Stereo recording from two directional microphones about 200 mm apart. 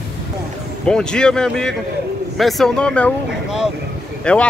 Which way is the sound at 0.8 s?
5° left (ahead or behind).